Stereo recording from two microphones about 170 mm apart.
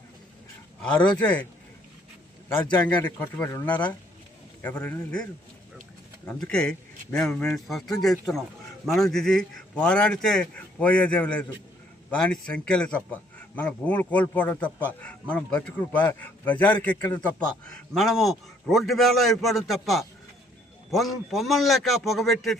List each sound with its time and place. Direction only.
0.8 s a man's voice: 5° left (ahead or behind)
2.7 s a man's voice: 10° left (ahead or behind)
6.2 s a man's voice: 5° left (ahead or behind)
17.0 s a man's voice: 25° left (ahead or behind)
17.7 s a man's voice: centre (ahead or behind)